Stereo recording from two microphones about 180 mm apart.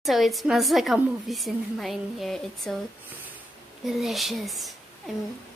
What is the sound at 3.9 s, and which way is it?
Speech, centre (ahead or behind).